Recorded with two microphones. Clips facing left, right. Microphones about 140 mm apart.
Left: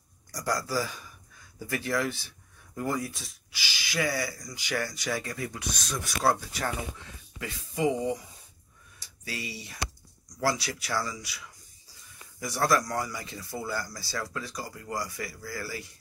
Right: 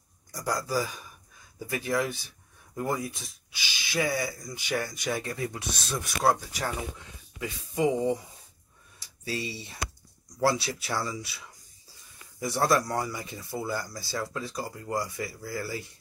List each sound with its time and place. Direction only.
0.5 s speech: 20° right (ahead or behind)
9.2 s speech: 25° right (ahead or behind)